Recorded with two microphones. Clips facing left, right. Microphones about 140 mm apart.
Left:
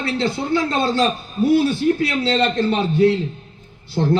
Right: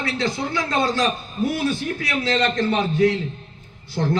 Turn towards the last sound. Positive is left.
turn(degrees=30)  # may be behind; listen again after turning